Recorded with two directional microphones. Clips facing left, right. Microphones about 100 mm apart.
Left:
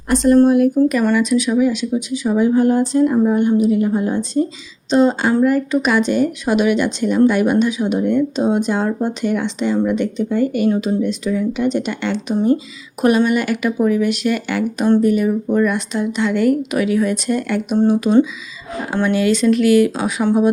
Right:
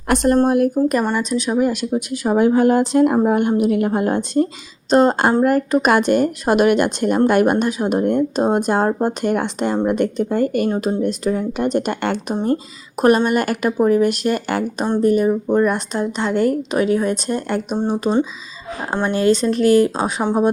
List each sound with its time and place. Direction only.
0.1 s speech: 55° right (ahead or behind)
1.1 s speech: 35° right (ahead or behind); by 4.4 s 60° right (ahead or behind)
4.9 s a woman's voice: 50° right (ahead or behind); by 20.2 s 35° right (ahead or behind)